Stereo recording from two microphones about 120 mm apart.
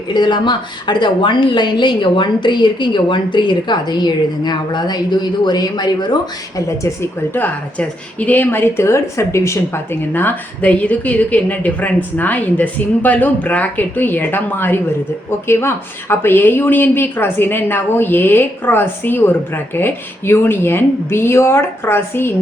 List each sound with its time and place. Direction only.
0.1 s a woman's voice: 40° left (ahead or behind)
6.7 s speech: 20° left (ahead or behind)